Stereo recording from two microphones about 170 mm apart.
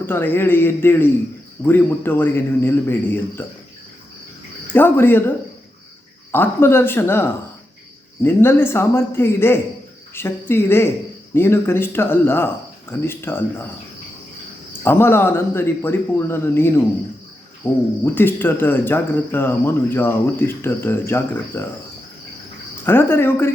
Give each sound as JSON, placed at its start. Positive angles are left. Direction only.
{"t": 0.0, "sound": "speech", "side_deg": 10}
{"t": 4.7, "sound": "speech", "side_deg": 10}
{"t": 6.3, "sound": "speech", "side_deg": 10}
{"t": 14.8, "sound": "speech", "side_deg": 15}
{"t": 22.9, "sound": "speech", "side_deg": 15}